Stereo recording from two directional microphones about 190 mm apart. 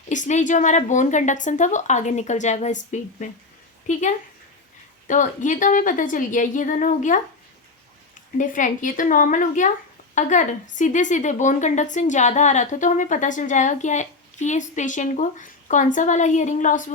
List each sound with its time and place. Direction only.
0.1 s a woman's voice: 40° left (ahead or behind)
5.0 s a woman's voice: 40° left (ahead or behind)
8.4 s a woman's voice: 40° left (ahead or behind)